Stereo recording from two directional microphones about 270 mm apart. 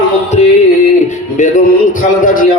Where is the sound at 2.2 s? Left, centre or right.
Left.